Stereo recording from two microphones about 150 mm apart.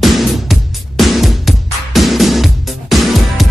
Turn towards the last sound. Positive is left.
turn(degrees=0)  # may be behind; listen again after turning